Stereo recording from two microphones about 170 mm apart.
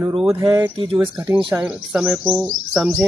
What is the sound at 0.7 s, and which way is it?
Speech, 35° right (ahead or behind).